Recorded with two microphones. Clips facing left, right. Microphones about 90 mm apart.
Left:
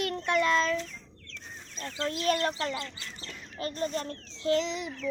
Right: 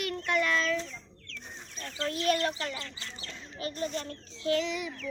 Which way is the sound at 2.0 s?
35° left (ahead or behind).